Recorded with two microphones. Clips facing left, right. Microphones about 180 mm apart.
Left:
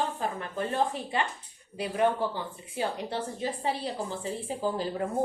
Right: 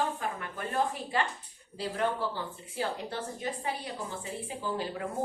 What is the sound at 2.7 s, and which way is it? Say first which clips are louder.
Speech: left 3 dB; 20° left (ahead or behind).